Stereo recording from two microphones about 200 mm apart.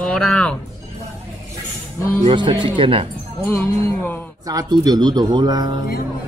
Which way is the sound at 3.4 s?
10° left (ahead or behind).